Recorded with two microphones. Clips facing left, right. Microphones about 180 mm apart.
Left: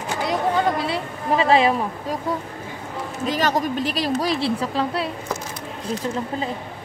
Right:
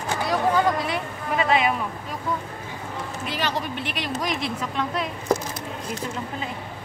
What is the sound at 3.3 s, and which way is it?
Speech, 45° left (ahead or behind).